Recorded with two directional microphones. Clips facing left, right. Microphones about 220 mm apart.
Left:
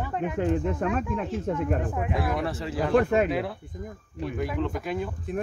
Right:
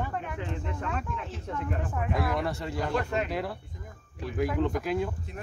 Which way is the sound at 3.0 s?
50° left (ahead or behind).